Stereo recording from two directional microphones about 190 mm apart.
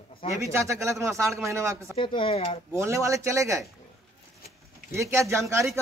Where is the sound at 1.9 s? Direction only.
25° left (ahead or behind).